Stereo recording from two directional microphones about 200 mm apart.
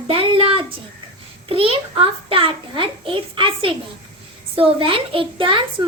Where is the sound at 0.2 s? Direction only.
25° right (ahead or behind).